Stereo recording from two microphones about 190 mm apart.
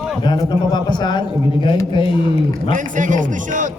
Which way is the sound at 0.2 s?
25° left (ahead or behind).